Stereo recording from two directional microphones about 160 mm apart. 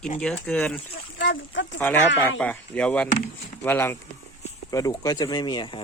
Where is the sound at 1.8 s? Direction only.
10° left (ahead or behind).